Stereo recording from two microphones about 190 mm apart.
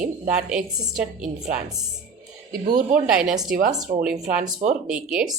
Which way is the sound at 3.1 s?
5° right (ahead or behind).